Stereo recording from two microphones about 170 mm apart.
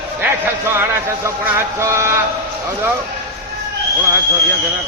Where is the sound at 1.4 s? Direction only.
15° right (ahead or behind).